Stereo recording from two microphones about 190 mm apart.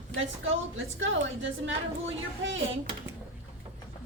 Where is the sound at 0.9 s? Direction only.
85° right.